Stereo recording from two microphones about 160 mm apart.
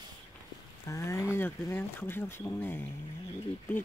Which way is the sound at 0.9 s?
15° left (ahead or behind).